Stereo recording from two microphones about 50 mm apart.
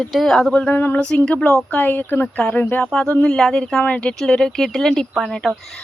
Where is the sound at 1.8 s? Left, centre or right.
Left.